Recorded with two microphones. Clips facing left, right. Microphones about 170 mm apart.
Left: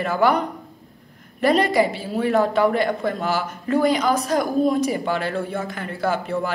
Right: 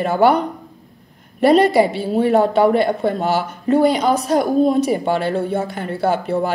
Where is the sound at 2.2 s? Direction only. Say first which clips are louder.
Right 4 dB; 30° right (ahead or behind).